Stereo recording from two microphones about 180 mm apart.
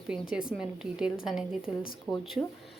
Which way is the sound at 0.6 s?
5° right (ahead or behind).